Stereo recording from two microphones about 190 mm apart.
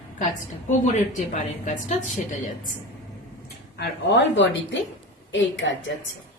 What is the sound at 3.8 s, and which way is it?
Speech, 65° left (ahead or behind).